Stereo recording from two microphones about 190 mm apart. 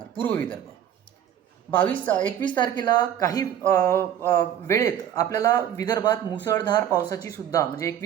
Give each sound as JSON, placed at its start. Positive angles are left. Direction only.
{"t": 0.2, "sound": "speech", "side_deg": 10}
{"t": 1.7, "sound": "speech", "side_deg": 10}
{"t": 2.4, "sound": "speech", "side_deg": 25}